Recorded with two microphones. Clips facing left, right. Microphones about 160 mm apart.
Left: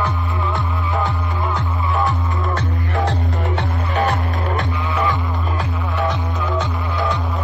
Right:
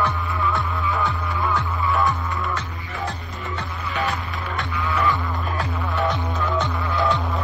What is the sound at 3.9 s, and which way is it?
Music, 40° left (ahead or behind).